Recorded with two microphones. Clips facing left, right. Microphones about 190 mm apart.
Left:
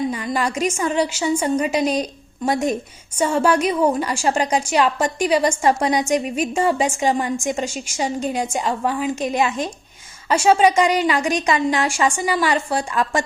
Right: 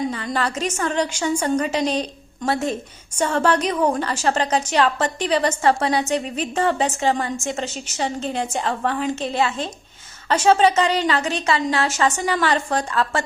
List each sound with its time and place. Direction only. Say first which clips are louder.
0.3 s a woman's voice: left 2 dB; 10° left (ahead or behind)